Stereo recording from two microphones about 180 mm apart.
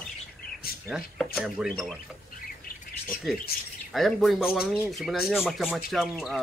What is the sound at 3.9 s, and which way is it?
Speech, centre (ahead or behind).